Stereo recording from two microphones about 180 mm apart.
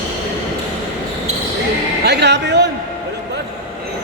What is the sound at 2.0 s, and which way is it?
Music, 70° right (ahead or behind).